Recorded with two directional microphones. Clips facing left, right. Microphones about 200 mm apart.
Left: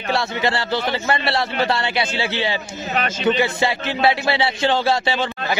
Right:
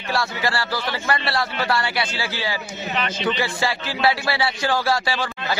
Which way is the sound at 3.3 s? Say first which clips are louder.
Left 4 dB; 20° left (ahead or behind).